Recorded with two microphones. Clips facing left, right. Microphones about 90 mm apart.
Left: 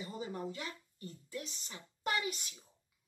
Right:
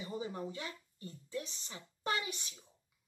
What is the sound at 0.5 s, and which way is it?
A woman's voice, 25° right (ahead or behind).